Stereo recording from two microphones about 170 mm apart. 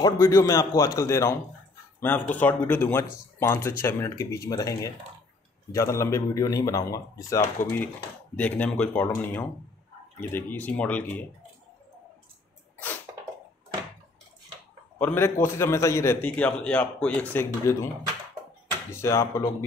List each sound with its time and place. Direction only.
0.0 s speech: 15° left (ahead or behind)
12.7 s cough: 10° left (ahead or behind)
15.0 s speech: 10° left (ahead or behind)
18.9 s speech: 15° left (ahead or behind)